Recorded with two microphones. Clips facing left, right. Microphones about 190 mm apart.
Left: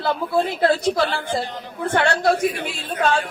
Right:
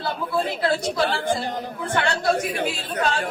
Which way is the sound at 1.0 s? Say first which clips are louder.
Even; 55° right (ahead or behind).